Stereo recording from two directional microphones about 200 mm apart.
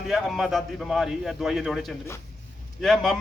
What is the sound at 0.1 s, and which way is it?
A man's voice, centre (ahead or behind).